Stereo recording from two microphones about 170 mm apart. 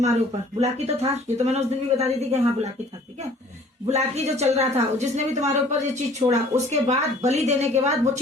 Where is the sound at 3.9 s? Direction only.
40° right (ahead or behind).